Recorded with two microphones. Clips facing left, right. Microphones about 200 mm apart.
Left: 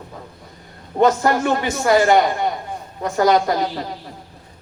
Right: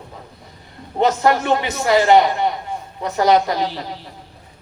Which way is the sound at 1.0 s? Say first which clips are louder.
Even; 50° left (ahead or behind).